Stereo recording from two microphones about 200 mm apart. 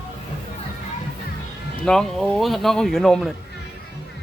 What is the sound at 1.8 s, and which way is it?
Speech, 5° left (ahead or behind).